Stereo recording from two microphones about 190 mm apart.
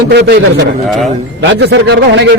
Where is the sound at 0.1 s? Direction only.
60° right (ahead or behind).